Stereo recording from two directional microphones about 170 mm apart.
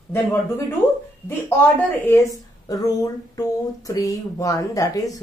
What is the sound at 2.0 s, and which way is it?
Speech, 15° left (ahead or behind).